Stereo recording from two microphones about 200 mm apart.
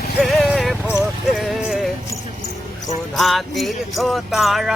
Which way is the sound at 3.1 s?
Centre (ahead or behind).